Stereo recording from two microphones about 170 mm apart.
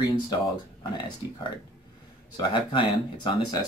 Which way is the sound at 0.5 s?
25° left (ahead or behind).